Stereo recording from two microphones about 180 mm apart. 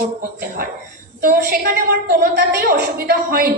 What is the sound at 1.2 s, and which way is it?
A woman's voice, 55° right (ahead or behind).